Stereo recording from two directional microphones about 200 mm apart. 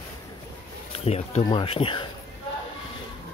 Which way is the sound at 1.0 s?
30° left (ahead or behind).